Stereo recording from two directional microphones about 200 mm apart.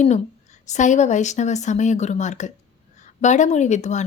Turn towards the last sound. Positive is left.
turn(degrees=35)  # may be behind; listen again after turning